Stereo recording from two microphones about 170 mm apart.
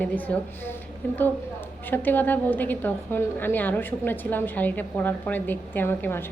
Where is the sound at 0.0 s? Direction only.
10° left (ahead or behind).